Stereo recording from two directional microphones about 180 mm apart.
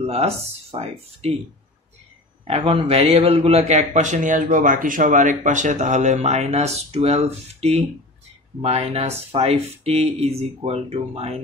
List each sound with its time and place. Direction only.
0.0 s a man's voice: 35° right (ahead or behind)
2.4 s a man's voice: 30° right (ahead or behind)